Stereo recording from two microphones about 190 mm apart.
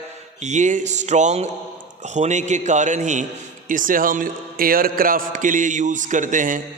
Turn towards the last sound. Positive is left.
turn(degrees=-45)  # may be behind; listen again after turning